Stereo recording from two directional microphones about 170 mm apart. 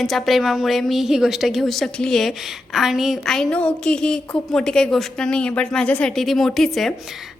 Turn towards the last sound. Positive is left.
turn(degrees=0)  # may be behind; listen again after turning